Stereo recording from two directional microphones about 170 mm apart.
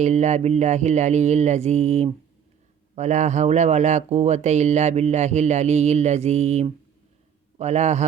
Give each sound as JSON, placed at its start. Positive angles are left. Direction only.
{"t": 0.0, "sound": "speech", "side_deg": -45}